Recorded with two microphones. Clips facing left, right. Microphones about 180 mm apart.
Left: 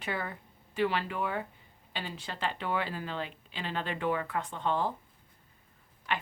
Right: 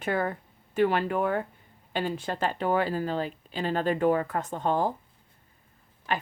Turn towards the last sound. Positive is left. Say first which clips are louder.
# right 4 dB
turn(degrees=-40)  # may be behind; listen again after turning